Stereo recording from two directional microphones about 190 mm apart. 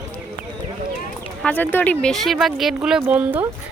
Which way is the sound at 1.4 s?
10° left (ahead or behind).